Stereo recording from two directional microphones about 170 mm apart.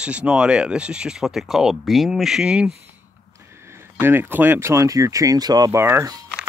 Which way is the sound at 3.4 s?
15° right (ahead or behind).